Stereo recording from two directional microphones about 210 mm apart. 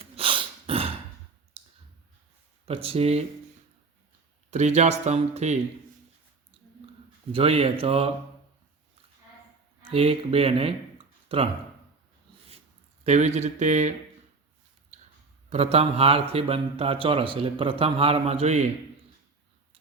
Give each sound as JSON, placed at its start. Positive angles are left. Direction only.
{"t": 0.0, "sound": "dog", "side_deg": -25}
{"t": 2.6, "sound": "speech", "side_deg": -25}
{"t": 4.5, "sound": "speech", "side_deg": -35}
{"t": 7.3, "sound": "speech", "side_deg": -25}
{"t": 9.9, "sound": "speech", "side_deg": -25}
{"t": 13.1, "sound": "speech", "side_deg": -35}
{"t": 15.4, "sound": "speech", "side_deg": -30}